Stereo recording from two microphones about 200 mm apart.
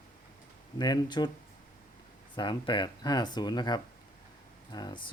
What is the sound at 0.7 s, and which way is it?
Speech, 20° left (ahead or behind).